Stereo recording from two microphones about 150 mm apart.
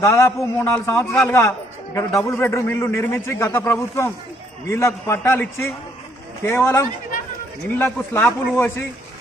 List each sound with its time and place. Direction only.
0.0 s a man's voice: 20° left (ahead or behind)